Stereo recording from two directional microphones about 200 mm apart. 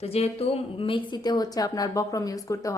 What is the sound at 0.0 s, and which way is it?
Speech, 30° left (ahead or behind).